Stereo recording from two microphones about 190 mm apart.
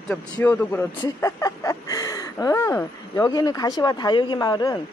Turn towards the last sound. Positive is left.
turn(degrees=20)  # may be behind; listen again after turning